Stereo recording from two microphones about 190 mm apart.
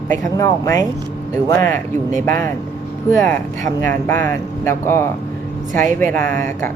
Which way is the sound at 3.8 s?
10° left (ahead or behind).